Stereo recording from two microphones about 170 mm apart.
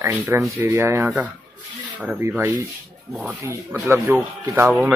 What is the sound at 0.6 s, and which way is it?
Speech, 15° right (ahead or behind).